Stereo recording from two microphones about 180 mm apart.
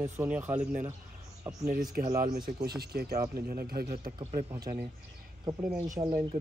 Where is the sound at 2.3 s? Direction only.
60° right (ahead or behind).